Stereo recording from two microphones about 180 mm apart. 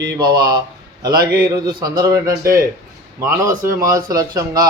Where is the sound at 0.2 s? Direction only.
25° right (ahead or behind).